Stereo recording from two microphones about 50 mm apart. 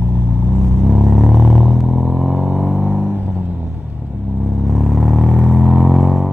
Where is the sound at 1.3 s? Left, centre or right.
Centre.